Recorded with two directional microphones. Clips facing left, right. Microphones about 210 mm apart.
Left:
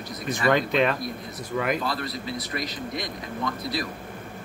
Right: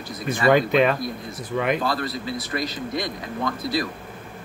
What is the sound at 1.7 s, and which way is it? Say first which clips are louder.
Speech: right 4 dB; 50° right (ahead or behind).